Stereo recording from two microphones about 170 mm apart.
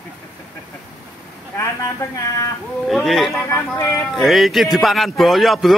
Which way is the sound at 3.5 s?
15° left (ahead or behind).